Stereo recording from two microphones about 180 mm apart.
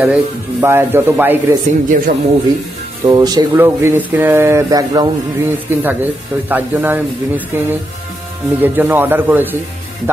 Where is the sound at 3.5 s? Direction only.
10° right (ahead or behind).